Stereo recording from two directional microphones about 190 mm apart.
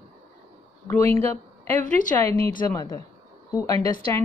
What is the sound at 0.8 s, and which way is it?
A woman's voice, 10° left (ahead or behind).